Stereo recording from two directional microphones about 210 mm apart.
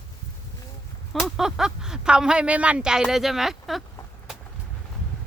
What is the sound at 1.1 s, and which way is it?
Speech, centre (ahead or behind).